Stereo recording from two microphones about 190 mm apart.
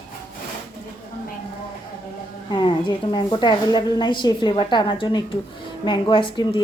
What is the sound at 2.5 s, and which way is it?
A woman's voice, 25° left (ahead or behind).